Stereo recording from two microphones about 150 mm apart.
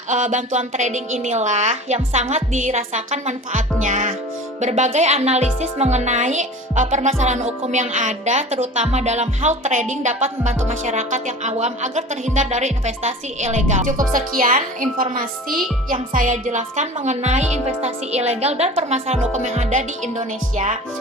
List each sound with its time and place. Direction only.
0.1 s a woman's voice: 55° right (ahead or behind)